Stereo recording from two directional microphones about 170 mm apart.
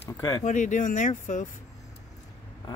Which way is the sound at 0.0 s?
20° left (ahead or behind).